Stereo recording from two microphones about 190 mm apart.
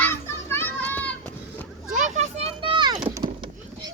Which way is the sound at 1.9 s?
40° right (ahead or behind).